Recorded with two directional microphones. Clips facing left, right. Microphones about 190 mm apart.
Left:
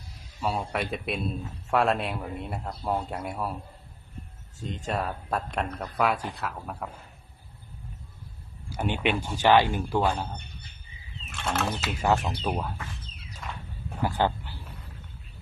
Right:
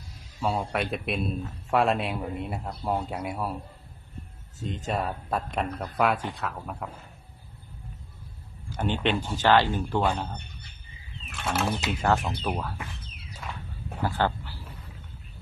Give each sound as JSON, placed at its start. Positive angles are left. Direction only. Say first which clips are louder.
{"t": 0.4, "sound": "speech", "louder": "right 1 dB", "side_deg": 0}
{"t": 4.6, "sound": "speech", "louder": "right 1 dB", "side_deg": 0}
{"t": 8.7, "sound": "a man's voice", "louder": "right 1 dB", "side_deg": 10}
{"t": 11.4, "sound": "speech", "louder": "right 1 dB", "side_deg": 0}
{"t": 11.9, "sound": "a man's voice", "louder": "left 2 dB", "side_deg": 15}
{"t": 13.4, "sound": "walk", "louder": "even", "side_deg": -5}
{"t": 14.0, "sound": "a sound", "louder": "left 1 dB", "side_deg": 15}